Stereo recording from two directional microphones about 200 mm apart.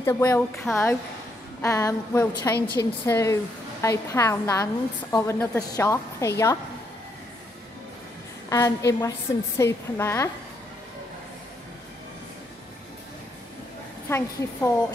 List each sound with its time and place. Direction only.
0.0 s a woman's voice: 15° left (ahead or behind)
8.5 s a woman's voice: 15° left (ahead or behind)
14.0 s a woman's voice: 10° left (ahead or behind)